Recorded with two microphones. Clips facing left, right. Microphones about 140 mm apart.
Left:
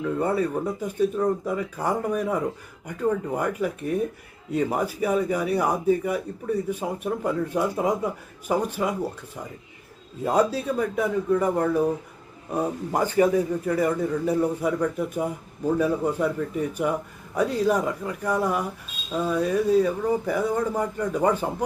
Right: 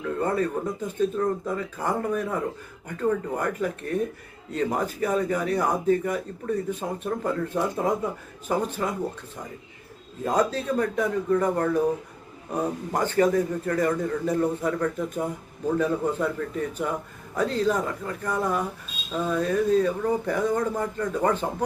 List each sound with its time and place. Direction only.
0.0 s speech: 10° left (ahead or behind)
12.9 s speech: 10° left (ahead or behind)